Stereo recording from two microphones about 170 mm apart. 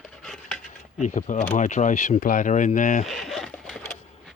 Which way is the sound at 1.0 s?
45° left (ahead or behind).